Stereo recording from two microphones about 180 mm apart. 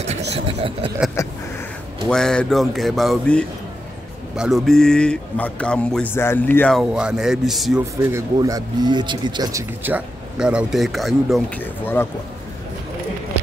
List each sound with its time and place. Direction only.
0.3 s speech: 35° right (ahead or behind)
1.2 s speech: 15° left (ahead or behind)
2.0 s a man's voice: 5° left (ahead or behind)
8.0 s speech: 15° right (ahead or behind); by 11.6 s centre (ahead or behind)
11.6 s speech: 10° left (ahead or behind)